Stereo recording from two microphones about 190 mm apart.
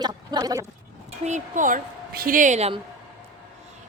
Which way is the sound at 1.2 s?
40° right (ahead or behind).